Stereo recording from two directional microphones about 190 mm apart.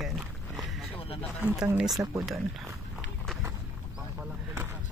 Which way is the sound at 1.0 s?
30° left (ahead or behind).